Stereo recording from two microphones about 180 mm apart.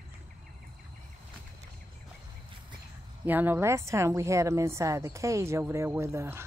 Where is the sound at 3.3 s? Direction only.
10° right (ahead or behind).